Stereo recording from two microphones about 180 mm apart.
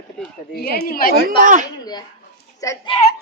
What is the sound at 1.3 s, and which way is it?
Speech, 50° right (ahead or behind).